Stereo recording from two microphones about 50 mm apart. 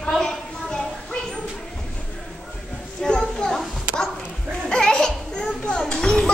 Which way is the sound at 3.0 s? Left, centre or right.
Centre.